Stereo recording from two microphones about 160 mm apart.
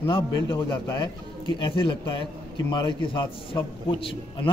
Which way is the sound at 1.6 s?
30° left (ahead or behind).